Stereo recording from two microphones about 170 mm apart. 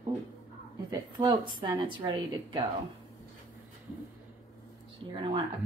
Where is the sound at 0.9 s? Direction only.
25° right (ahead or behind).